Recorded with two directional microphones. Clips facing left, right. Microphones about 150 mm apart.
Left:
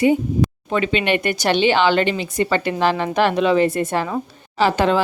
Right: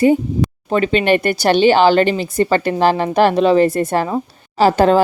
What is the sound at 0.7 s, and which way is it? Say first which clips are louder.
A woman's voice: right 6 dB; 40° right (ahead or behind).